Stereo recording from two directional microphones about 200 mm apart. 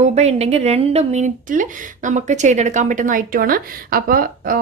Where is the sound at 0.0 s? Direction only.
35° right (ahead or behind).